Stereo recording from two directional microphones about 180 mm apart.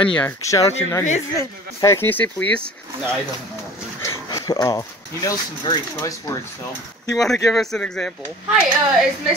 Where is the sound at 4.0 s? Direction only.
15° left (ahead or behind).